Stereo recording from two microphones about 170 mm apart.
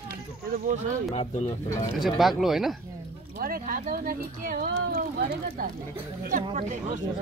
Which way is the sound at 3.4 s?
60° right (ahead or behind).